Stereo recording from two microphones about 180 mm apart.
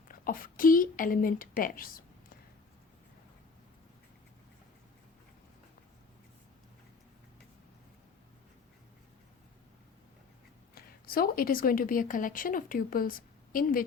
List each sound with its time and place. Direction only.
0.1 s a woman's voice: 50° left (ahead or behind)
10.8 s a woman's voice: 55° left (ahead or behind)